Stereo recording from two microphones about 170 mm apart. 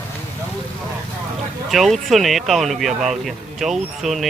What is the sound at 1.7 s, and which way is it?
Speech, centre (ahead or behind).